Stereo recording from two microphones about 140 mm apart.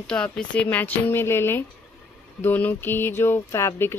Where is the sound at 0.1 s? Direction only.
5° left (ahead or behind).